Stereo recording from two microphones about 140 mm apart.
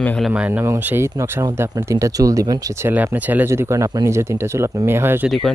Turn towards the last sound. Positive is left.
turn(degrees=-15)  # may be behind; listen again after turning